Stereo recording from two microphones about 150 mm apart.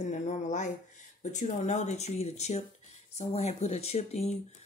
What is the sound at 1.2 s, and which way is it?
Speech, 50° left (ahead or behind).